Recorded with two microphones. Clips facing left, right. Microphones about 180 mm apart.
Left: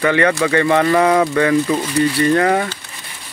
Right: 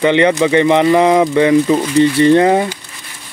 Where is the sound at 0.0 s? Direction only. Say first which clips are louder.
Right 4 dB; 20° right (ahead or behind).